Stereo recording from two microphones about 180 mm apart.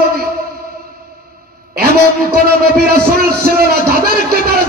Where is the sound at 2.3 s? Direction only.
60° right (ahead or behind).